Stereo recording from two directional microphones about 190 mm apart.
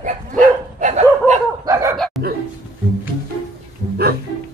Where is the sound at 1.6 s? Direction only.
15° right (ahead or behind).